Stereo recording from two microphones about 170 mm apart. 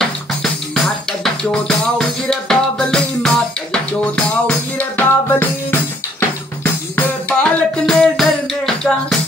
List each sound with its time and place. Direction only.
0.0 s music: centre (ahead or behind)